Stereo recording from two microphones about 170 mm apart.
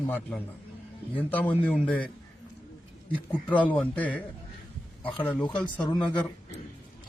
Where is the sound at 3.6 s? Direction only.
10° left (ahead or behind).